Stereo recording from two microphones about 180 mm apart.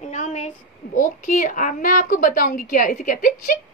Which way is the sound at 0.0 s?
45° left (ahead or behind).